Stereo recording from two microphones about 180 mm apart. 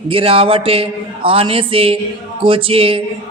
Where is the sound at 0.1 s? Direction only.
30° right (ahead or behind).